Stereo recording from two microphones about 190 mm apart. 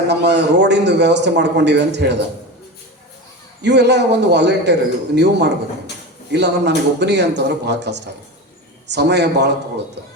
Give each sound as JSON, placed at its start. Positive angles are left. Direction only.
{"t": 0.1, "sound": "a man's voice", "side_deg": -65}
{"t": 3.6, "sound": "a man's voice", "side_deg": -65}